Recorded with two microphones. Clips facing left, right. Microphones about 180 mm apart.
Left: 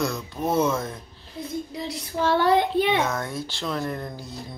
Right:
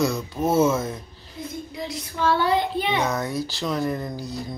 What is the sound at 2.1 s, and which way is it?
Child singing, 45° left (ahead or behind).